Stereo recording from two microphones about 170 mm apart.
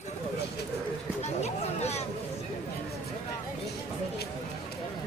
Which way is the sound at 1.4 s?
40° left (ahead or behind).